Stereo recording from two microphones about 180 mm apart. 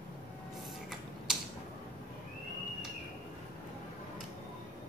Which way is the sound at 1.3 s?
5° right (ahead or behind).